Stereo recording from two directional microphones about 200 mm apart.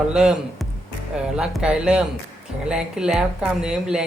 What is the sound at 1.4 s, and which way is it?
Speech, 5° right (ahead or behind).